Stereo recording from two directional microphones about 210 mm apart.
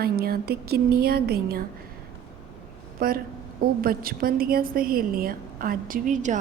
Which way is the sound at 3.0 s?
45° right (ahead or behind).